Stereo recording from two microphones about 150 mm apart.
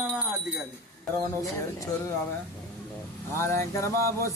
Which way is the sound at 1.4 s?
25° left (ahead or behind).